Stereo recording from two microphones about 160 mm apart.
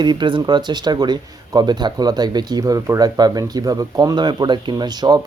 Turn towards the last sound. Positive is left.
turn(degrees=-25)  # may be behind; listen again after turning